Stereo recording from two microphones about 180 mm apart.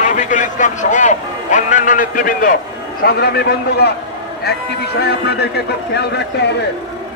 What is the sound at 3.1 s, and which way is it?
Speech, 60° left (ahead or behind).